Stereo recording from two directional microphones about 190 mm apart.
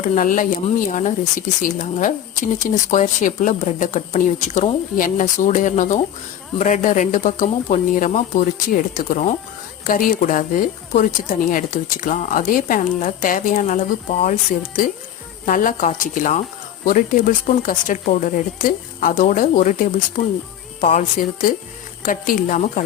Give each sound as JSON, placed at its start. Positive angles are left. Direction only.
{"t": 0.0, "sound": "speech", "side_deg": 40}